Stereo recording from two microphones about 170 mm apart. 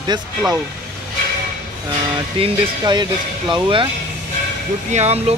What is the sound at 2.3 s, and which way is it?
Speech, 30° right (ahead or behind).